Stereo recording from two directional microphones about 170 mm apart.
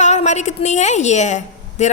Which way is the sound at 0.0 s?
40° left (ahead or behind).